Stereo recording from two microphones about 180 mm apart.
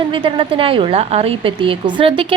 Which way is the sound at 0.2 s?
30° right (ahead or behind).